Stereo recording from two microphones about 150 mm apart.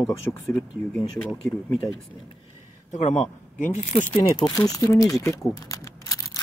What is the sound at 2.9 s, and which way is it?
Speech, 55° left (ahead or behind).